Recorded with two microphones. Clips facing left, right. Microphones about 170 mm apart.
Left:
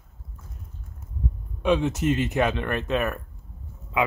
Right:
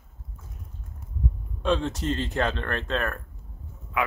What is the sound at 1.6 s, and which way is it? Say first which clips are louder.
Speech: left 3 dB; 15° left (ahead or behind).